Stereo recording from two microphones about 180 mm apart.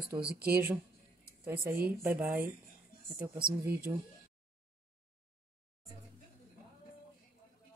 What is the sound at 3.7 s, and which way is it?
Speech, 55° right (ahead or behind).